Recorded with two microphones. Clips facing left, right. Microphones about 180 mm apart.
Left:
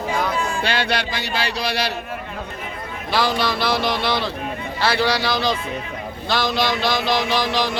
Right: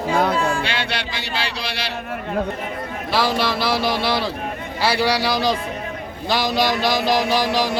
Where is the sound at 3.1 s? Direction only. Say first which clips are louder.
Even; 5° right (ahead or behind).